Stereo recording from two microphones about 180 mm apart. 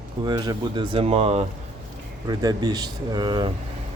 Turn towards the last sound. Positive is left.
turn(degrees=-25)  # may be behind; listen again after turning